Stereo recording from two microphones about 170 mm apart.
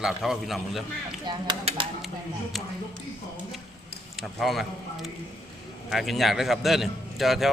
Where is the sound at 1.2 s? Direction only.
30° right (ahead or behind).